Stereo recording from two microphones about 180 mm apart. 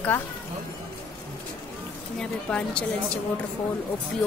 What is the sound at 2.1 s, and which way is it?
Speech, 5° left (ahead or behind).